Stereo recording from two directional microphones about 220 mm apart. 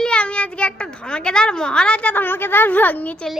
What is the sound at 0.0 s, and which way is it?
A child's voice, 5° left (ahead or behind).